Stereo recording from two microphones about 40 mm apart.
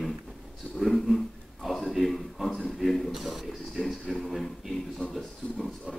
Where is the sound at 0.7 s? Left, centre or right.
Centre.